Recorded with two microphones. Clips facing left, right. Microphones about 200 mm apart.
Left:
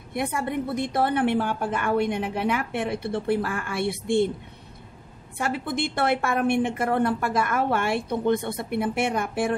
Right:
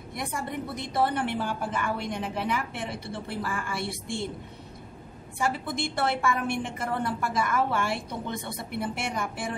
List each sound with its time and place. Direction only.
0.1 s a woman's voice: 60° left (ahead or behind)
5.4 s a woman's voice: 60° left (ahead or behind)